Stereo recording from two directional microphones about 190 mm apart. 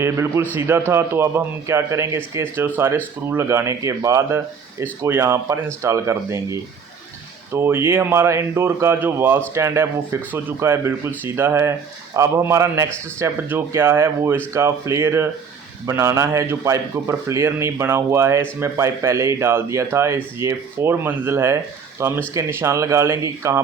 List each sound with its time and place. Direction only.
0.0 s speech: 15° right (ahead or behind)